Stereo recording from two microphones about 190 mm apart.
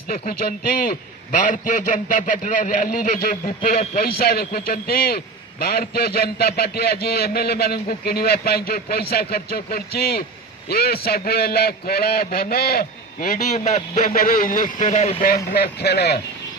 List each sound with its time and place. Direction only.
0.1 s a man's voice: 50° left (ahead or behind)
15.2 s a man's voice: 55° left (ahead or behind)